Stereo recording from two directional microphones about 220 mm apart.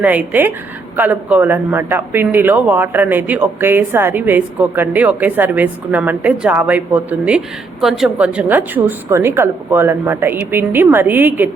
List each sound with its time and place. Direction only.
0.0 s speech: 5° right (ahead or behind)